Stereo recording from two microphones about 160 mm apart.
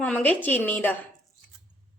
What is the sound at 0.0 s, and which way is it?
Speech, 10° left (ahead or behind).